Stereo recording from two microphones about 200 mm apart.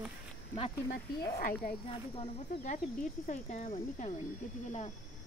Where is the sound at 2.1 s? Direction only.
40° left (ahead or behind).